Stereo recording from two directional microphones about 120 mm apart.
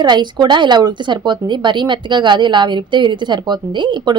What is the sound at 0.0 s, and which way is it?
A woman's voice, 40° right (ahead or behind).